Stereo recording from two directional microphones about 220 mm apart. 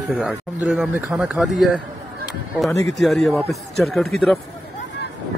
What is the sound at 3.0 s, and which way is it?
Speech, centre (ahead or behind).